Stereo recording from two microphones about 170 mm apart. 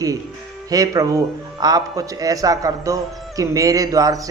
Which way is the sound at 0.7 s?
20° right (ahead or behind).